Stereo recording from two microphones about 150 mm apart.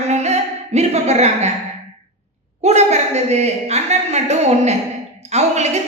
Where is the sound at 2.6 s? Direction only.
45° right (ahead or behind).